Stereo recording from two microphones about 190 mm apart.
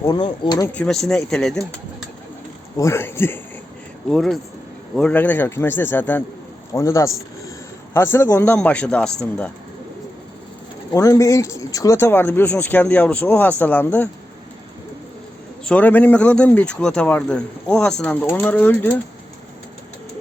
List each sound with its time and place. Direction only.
0.0 s speech: 25° left (ahead or behind)
0.7 s speech: 5° left (ahead or behind)
2.7 s speech: 15° left (ahead or behind)
4.1 s speech: centre (ahead or behind)
10.9 s speech: 15° left (ahead or behind)
15.6 s speech: 5° left (ahead or behind)